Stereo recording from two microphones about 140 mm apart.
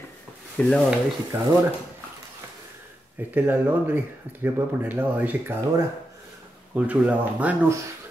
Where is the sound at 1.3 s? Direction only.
10° right (ahead or behind).